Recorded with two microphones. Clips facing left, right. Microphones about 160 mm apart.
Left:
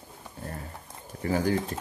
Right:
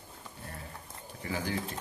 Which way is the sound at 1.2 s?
45° left (ahead or behind).